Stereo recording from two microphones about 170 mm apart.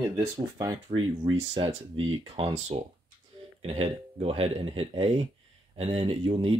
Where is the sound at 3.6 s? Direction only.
40° right (ahead or behind).